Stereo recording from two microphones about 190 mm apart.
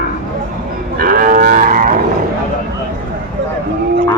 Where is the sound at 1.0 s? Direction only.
50° right (ahead or behind).